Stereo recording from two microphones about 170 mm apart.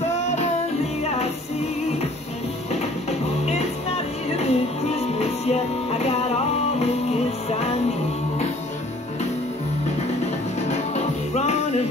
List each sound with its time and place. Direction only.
0.2 s music: 40° left (ahead or behind)
2.7 s music: 40° left (ahead or behind)
7.4 s music: 40° left (ahead or behind)
10.6 s music: 40° left (ahead or behind)